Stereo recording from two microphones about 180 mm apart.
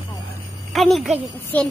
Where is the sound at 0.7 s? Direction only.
Centre (ahead or behind).